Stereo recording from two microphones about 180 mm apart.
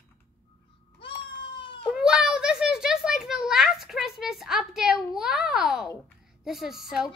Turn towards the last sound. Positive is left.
turn(degrees=0)  # may be behind; listen again after turning